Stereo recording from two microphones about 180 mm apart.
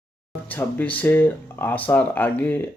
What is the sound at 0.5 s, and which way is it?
Speech, 10° left (ahead or behind).